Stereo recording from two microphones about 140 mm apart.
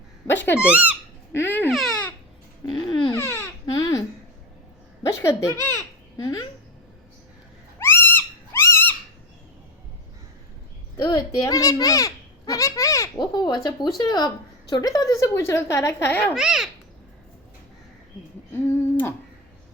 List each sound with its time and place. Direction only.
0.3 s babbling: 15° left (ahead or behind)
0.6 s speech: 10° right (ahead or behind)
1.3 s babbling: 15° left (ahead or behind)
1.7 s speech: centre (ahead or behind)
2.6 s babbling: 35° left (ahead or behind)
3.1 s baby cry: 15° left (ahead or behind)
3.7 s babbling: 25° left (ahead or behind)
5.0 s babbling: 20° left (ahead or behind)
7.8 s cat: 15° left (ahead or behind)
10.9 s a child's voice: 30° left (ahead or behind)
16.3 s a child's voice: 5° right (ahead or behind)
18.5 s a sound: 15° left (ahead or behind)